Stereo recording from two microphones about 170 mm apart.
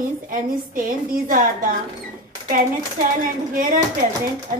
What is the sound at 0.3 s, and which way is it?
A woman's voice, 55° right (ahead or behind).